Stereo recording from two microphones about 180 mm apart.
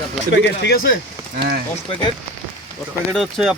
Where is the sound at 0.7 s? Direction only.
55° left (ahead or behind).